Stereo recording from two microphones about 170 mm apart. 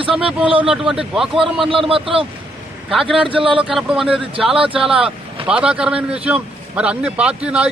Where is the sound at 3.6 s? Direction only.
5° right (ahead or behind).